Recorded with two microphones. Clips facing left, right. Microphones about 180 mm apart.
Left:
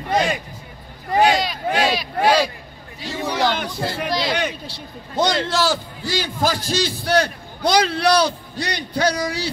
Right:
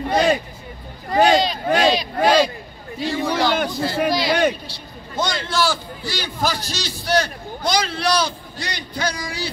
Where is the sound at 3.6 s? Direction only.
50° right (ahead or behind).